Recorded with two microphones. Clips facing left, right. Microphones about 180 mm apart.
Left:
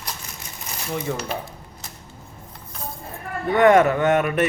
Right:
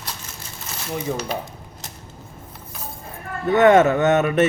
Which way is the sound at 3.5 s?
25° right (ahead or behind).